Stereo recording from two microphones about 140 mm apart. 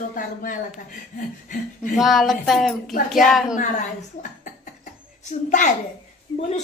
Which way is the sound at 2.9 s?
75° left (ahead or behind).